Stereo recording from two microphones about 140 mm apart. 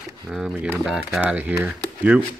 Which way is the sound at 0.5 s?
15° right (ahead or behind).